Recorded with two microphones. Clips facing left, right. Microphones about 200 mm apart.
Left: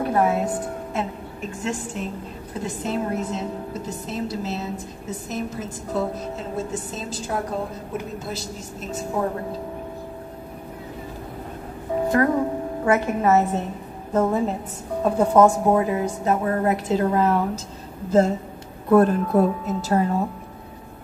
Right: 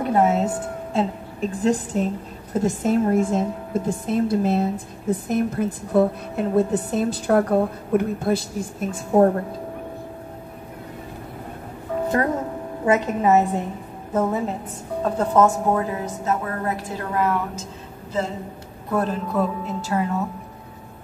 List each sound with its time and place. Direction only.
0.0 s a woman's voice: 20° right (ahead or behind)
0.9 s a woman's voice: 35° right (ahead or behind)
2.5 s a woman's voice: 45° right (ahead or behind)
12.1 s a woman's voice: 30° right (ahead or behind)
14.1 s a woman's voice: centre (ahead or behind)
15.0 s a woman's voice: 10° left (ahead or behind)
18.9 s a woman's voice: 55° left (ahead or behind); by 20.2 s 35° left (ahead or behind)